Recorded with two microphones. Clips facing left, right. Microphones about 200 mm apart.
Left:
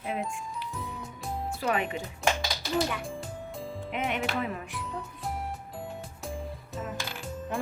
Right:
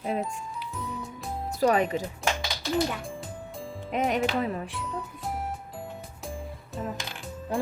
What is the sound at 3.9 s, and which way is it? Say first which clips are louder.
Music: right 5 dB; 40° right (ahead or behind).